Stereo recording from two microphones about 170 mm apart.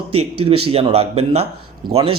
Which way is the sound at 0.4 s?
35° right (ahead or behind).